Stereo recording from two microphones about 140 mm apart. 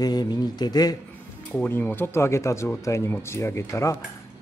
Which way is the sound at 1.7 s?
15° left (ahead or behind).